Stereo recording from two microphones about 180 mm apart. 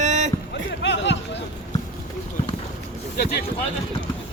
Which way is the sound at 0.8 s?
75° left (ahead or behind).